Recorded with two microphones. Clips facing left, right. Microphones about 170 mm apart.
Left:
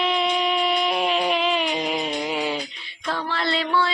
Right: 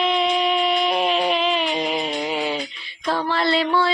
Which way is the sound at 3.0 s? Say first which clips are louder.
Right 5 dB; 40° right (ahead or behind).